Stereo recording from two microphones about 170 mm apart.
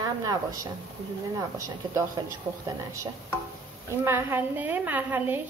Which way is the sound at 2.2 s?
25° right (ahead or behind).